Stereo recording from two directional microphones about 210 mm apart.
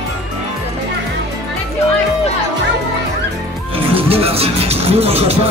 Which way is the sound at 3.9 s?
25° right (ahead or behind).